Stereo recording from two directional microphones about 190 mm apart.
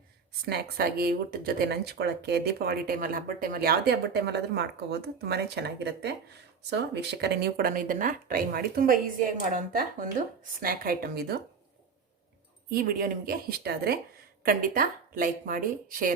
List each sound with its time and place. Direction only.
0.4 s speech: 55° right (ahead or behind)
12.7 s speech: 50° right (ahead or behind)